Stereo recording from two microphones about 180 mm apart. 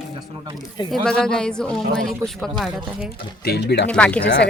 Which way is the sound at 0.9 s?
5° left (ahead or behind).